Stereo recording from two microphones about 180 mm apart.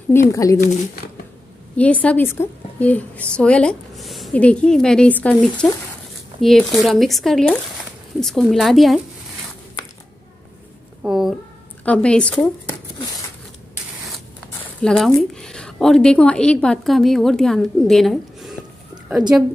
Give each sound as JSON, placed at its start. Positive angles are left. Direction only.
{"t": 0.3, "sound": "speech", "side_deg": 20}
{"t": 1.8, "sound": "a woman's voice", "side_deg": 10}
{"t": 11.0, "sound": "a sound", "side_deg": -5}
{"t": 11.8, "sound": "speech", "side_deg": 5}
{"t": 14.1, "sound": "a woman's voice", "side_deg": 5}